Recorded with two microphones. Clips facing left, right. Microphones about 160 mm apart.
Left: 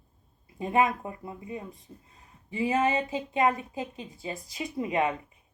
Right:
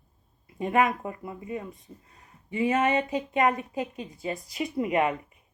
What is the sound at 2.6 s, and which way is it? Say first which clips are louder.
A woman's voice: right 2 dB; 30° left (ahead or behind).